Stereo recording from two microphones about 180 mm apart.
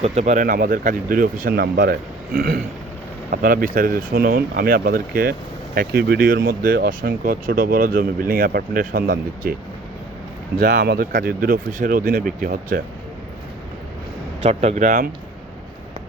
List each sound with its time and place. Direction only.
0.0 s speech: 35° right (ahead or behind); by 9.6 s 55° right (ahead or behind)
10.6 s speech: 55° right (ahead or behind)
14.4 s speech: 35° right (ahead or behind)